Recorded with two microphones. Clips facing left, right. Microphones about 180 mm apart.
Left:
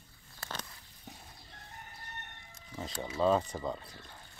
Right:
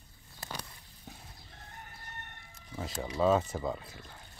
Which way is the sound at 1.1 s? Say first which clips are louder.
Even; centre (ahead or behind).